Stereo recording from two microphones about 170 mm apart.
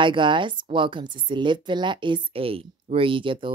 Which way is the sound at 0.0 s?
30° right (ahead or behind).